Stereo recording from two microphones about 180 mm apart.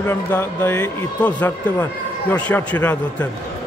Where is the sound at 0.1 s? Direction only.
15° left (ahead or behind).